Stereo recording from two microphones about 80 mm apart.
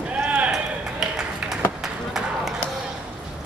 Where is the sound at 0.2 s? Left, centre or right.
Right.